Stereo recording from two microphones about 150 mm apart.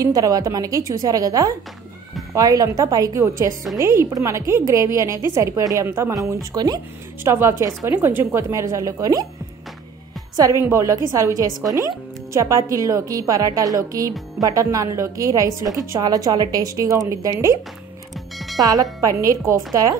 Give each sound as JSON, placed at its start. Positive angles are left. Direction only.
{"t": 0.0, "sound": "a woman's voice", "side_deg": -25}
{"t": 10.6, "sound": "speech", "side_deg": -20}
{"t": 18.1, "sound": "music", "side_deg": 0}
{"t": 18.6, "sound": "speech", "side_deg": -25}